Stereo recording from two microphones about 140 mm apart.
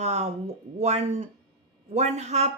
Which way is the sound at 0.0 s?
50° right (ahead or behind).